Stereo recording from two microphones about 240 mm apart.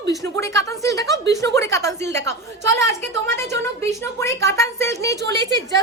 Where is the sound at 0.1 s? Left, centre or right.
Centre.